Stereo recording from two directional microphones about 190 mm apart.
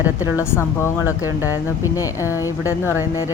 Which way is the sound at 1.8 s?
15° left (ahead or behind).